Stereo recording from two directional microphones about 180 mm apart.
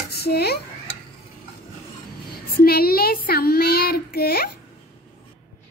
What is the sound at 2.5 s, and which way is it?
Child singing, 60° left (ahead or behind).